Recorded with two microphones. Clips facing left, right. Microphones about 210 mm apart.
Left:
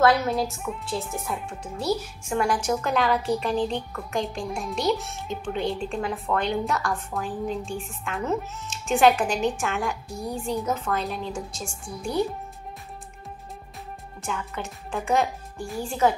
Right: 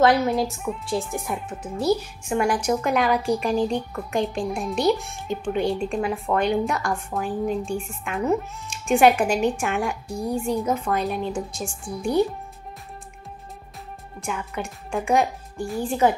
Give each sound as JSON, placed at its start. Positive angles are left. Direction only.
{"t": 0.0, "sound": "speech", "side_deg": -15}
{"t": 14.2, "sound": "a woman's voice", "side_deg": -15}